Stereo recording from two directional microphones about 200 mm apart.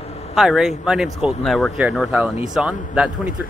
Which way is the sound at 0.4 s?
Centre (ahead or behind).